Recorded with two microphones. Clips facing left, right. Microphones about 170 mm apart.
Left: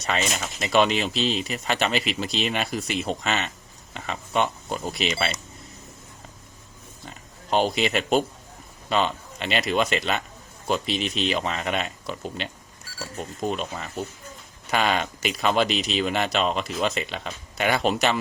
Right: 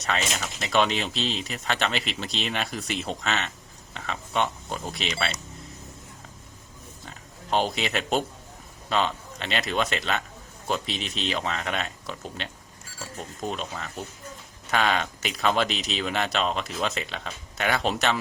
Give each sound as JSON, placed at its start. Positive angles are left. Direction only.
{"t": 0.1, "sound": "speech", "side_deg": 5}
{"t": 7.5, "sound": "speech", "side_deg": 0}
{"t": 13.5, "sound": "speech", "side_deg": 5}